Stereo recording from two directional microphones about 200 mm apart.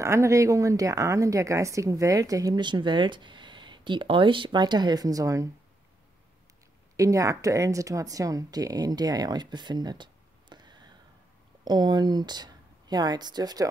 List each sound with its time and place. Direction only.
0.0 s a woman's voice: 15° right (ahead or behind)
7.0 s speech: 15° right (ahead or behind)